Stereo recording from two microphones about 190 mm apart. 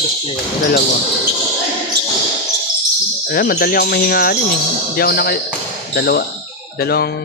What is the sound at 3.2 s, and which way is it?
Speech, 55° left (ahead or behind).